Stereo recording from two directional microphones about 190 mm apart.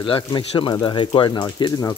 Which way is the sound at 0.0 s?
25° left (ahead or behind).